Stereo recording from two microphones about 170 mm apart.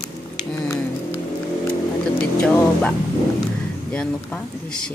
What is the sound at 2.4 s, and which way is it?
Speech, 5° left (ahead or behind).